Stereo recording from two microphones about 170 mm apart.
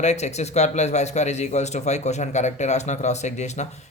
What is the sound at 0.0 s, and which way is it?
Speech, 40° left (ahead or behind).